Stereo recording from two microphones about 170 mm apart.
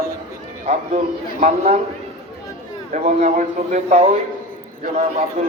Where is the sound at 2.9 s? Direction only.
45° right (ahead or behind).